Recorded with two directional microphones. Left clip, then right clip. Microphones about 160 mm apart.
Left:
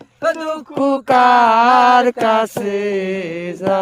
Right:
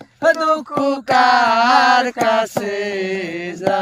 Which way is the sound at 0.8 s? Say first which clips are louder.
Left 3 dB; 50° left (ahead or behind).